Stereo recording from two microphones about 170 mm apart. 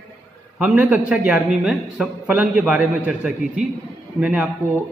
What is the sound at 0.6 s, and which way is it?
A man's voice, 10° right (ahead or behind).